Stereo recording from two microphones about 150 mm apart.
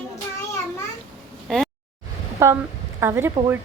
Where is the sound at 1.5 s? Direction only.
Centre (ahead or behind).